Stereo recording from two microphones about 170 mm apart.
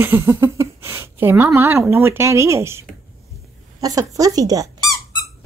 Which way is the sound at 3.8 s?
20° right (ahead or behind).